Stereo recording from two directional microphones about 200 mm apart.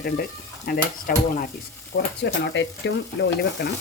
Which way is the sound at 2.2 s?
60° left (ahead or behind).